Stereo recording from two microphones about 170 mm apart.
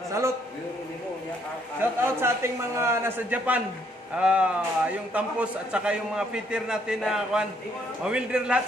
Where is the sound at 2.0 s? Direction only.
15° right (ahead or behind).